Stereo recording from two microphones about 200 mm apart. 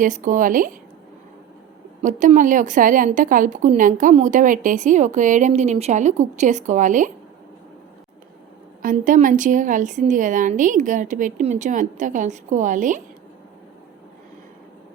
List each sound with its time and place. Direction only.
0.0 s a woman's voice: 40° right (ahead or behind)
2.0 s a woman's voice: 40° right (ahead or behind)
8.8 s a woman's voice: 40° right (ahead or behind)